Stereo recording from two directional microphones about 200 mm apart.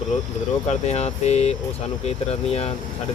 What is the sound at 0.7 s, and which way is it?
Speech, 30° left (ahead or behind).